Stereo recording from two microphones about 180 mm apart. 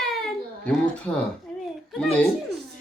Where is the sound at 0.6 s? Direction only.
10° left (ahead or behind).